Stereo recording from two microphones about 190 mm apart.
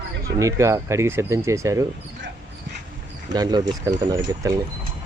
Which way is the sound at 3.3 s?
20° right (ahead or behind).